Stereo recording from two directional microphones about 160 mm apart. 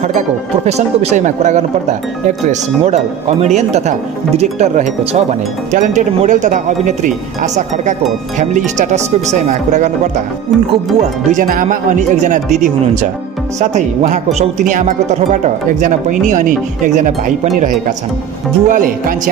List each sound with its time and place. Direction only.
0.7 s speech: 45° right (ahead or behind)
11.0 s speech: 60° right (ahead or behind)
18.7 s speech: 60° right (ahead or behind)